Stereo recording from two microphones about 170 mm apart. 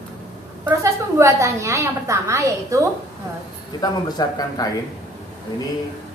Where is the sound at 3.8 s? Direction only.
25° left (ahead or behind).